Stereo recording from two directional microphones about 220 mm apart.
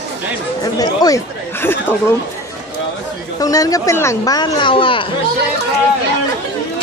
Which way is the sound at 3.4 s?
15° left (ahead or behind).